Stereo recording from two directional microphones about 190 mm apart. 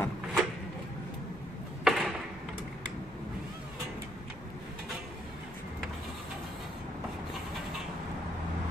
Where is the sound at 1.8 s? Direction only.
Centre (ahead or behind).